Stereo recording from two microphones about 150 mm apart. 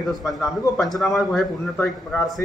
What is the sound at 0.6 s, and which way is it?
Speech, 20° left (ahead or behind).